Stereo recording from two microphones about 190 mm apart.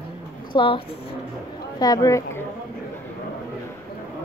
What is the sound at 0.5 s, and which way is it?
A woman's voice, 25° left (ahead or behind).